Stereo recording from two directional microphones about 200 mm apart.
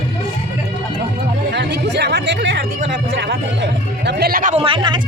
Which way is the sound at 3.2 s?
65° right (ahead or behind).